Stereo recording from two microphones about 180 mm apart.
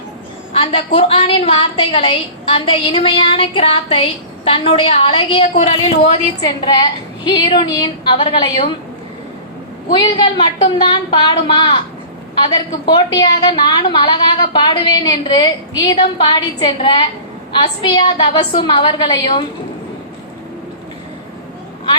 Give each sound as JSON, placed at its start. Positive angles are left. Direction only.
{"t": 0.5, "sound": "a woman's voice", "side_deg": 30}
{"t": 7.3, "sound": "a woman's voice", "side_deg": 25}
{"t": 9.9, "sound": "a woman's voice", "side_deg": 25}
{"t": 12.8, "sound": "a woman's voice", "side_deg": 25}